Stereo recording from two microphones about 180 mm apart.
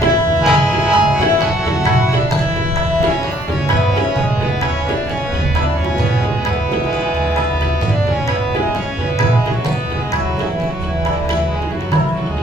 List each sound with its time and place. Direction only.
0.4 s music: 5° right (ahead or behind)